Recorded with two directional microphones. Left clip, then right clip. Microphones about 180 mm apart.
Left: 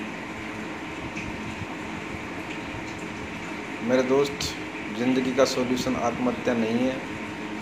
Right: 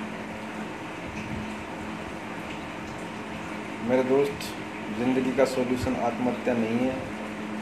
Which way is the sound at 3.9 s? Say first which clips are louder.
Left 1 dB; 10° right (ahead or behind).